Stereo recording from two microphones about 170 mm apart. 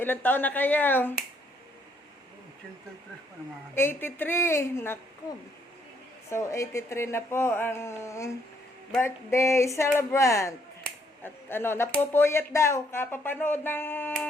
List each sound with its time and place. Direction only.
0.0 s speech: 10° left (ahead or behind)
3.8 s speech: 15° left (ahead or behind)
6.3 s speech: 15° left (ahead or behind)